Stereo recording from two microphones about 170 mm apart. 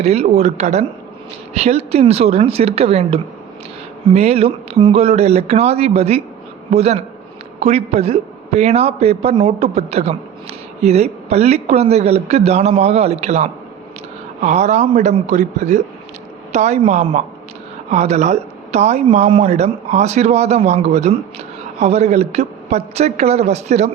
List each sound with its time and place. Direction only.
0.0 s a man's voice: 40° right (ahead or behind)